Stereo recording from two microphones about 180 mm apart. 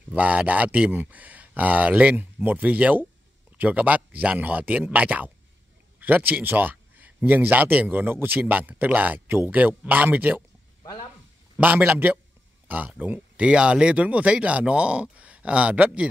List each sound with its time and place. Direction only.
0.1 s speech: 10° right (ahead or behind)
10.8 s a sound: 25° left (ahead or behind)
11.5 s speech: 10° right (ahead or behind)